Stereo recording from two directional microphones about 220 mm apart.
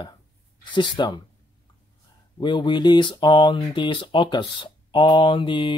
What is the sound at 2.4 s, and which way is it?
Speech, 20° left (ahead or behind).